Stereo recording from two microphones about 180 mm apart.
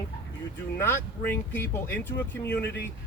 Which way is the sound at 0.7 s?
15° left (ahead or behind).